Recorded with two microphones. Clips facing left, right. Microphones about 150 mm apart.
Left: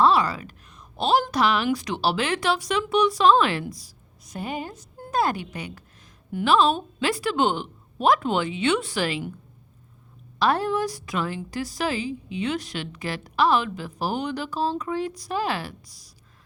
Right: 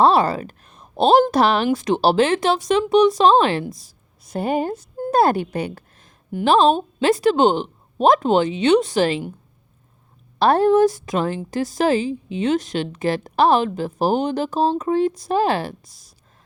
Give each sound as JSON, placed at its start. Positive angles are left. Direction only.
{"t": 0.0, "sound": "a woman's voice", "side_deg": -30}
{"t": 4.4, "sound": "a woman's voice", "side_deg": -55}
{"t": 4.9, "sound": "a sound", "side_deg": -35}
{"t": 5.4, "sound": "a woman's voice", "side_deg": -55}
{"t": 6.6, "sound": "speech", "side_deg": -25}
{"t": 7.5, "sound": "a sound", "side_deg": -25}
{"t": 8.0, "sound": "a woman's voice", "side_deg": -40}
{"t": 8.9, "sound": "speech", "side_deg": -25}
{"t": 10.3, "sound": "a woman's voice", "side_deg": -30}
{"t": 11.0, "sound": "speech", "side_deg": -45}
{"t": 11.3, "sound": "a woman's voice", "side_deg": -25}
{"t": 13.0, "sound": "a woman's voice", "side_deg": -30}
{"t": 14.0, "sound": "speech", "side_deg": -40}
{"t": 14.4, "sound": "speech", "side_deg": -25}